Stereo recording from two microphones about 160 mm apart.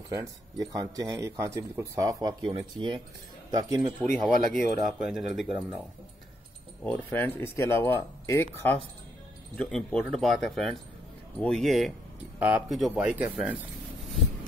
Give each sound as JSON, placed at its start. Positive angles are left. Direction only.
{"t": 0.1, "sound": "speech", "side_deg": -20}
{"t": 4.1, "sound": "speech", "side_deg": -55}
{"t": 4.8, "sound": "speech", "side_deg": -5}
{"t": 6.8, "sound": "speech", "side_deg": 10}
{"t": 9.6, "sound": "speech", "side_deg": 5}